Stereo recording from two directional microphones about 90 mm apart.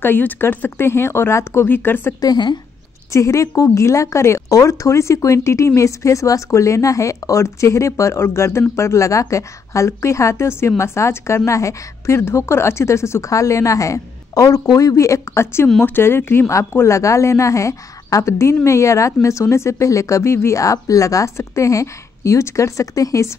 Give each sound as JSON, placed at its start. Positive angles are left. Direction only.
{"t": 0.0, "sound": "speech", "side_deg": 25}
{"t": 2.1, "sound": "speech", "side_deg": 50}
{"t": 3.1, "sound": "speech", "side_deg": 35}